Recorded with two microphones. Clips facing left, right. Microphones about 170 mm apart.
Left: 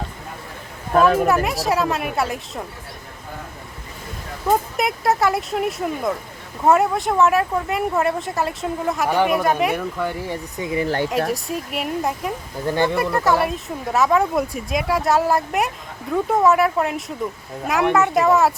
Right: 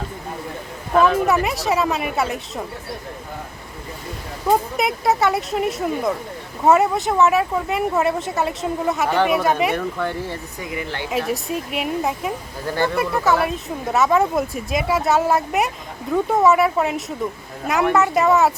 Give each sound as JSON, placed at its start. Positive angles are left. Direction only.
{"t": 0.9, "sound": "speech", "side_deg": 45}
{"t": 1.3, "sound": "speech", "side_deg": 0}
{"t": 4.4, "sound": "speech", "side_deg": 0}
{"t": 9.0, "sound": "speech", "side_deg": 10}
{"t": 9.3, "sound": "speech", "side_deg": 0}
{"t": 10.6, "sound": "speech", "side_deg": 30}
{"t": 10.8, "sound": "speech", "side_deg": 45}
{"t": 11.3, "sound": "speech", "side_deg": 0}
{"t": 12.6, "sound": "speech", "side_deg": 20}
{"t": 13.0, "sound": "speech", "side_deg": 0}